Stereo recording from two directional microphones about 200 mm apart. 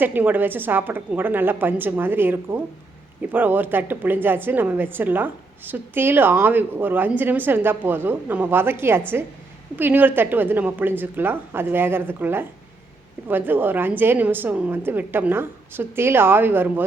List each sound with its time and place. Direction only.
0.0 s a woman's voice: 10° right (ahead or behind)